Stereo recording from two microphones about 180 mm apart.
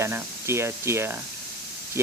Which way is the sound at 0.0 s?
15° right (ahead or behind).